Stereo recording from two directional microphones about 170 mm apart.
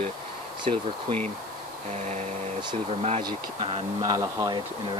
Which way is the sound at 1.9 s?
40° right (ahead or behind).